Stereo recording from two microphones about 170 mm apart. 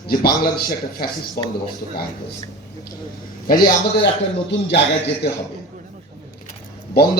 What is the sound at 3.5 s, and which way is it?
Speech, 60° left (ahead or behind).